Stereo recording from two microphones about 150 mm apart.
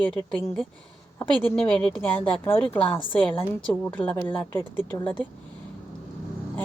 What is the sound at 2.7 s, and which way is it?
Speech, 40° left (ahead or behind).